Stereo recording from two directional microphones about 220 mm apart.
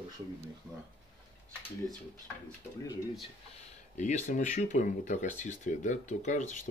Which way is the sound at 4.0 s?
35° left (ahead or behind).